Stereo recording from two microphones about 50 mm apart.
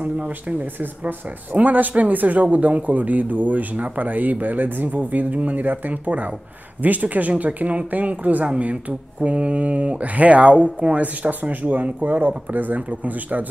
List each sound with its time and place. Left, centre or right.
0.0 s speech: right